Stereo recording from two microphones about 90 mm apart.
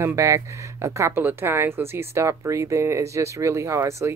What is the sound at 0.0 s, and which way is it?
Speech, 30° right (ahead or behind).